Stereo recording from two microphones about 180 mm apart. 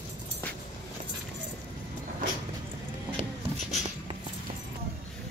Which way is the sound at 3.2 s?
40° right (ahead or behind).